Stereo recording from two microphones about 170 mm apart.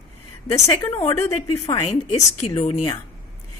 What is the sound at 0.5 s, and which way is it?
Speech, 15° left (ahead or behind).